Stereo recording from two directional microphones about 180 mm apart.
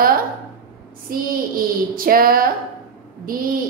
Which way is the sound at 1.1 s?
50° right (ahead or behind).